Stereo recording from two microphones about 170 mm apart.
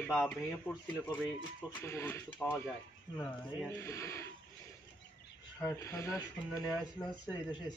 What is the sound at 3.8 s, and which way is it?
Speech, 15° left (ahead or behind).